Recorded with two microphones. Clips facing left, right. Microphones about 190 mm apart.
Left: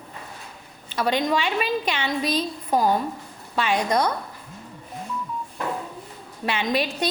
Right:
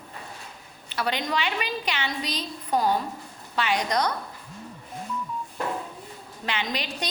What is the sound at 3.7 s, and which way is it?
Speech, 25° left (ahead or behind).